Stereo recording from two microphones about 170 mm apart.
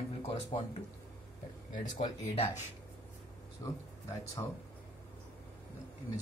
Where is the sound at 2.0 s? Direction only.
35° left (ahead or behind).